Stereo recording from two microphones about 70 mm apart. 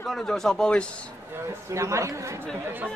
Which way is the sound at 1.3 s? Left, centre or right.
Right.